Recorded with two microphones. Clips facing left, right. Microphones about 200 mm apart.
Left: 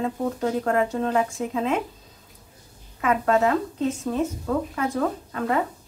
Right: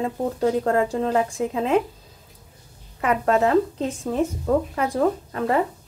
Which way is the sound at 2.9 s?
30° right (ahead or behind).